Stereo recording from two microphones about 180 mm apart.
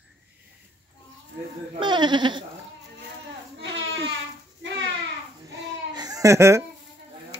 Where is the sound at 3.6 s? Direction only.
90° right.